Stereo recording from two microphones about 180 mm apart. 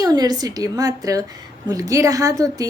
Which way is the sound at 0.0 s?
20° right (ahead or behind).